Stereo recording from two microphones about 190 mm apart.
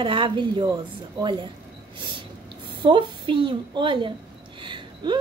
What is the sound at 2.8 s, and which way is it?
A woman's voice, 25° right (ahead or behind).